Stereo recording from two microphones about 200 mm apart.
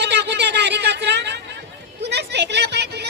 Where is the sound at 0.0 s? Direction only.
55° right (ahead or behind).